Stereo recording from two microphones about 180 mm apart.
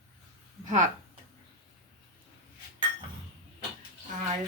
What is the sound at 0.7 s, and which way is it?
Speech, 45° right (ahead or behind).